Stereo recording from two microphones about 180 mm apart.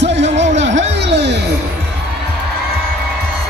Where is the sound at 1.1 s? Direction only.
75° right (ahead or behind).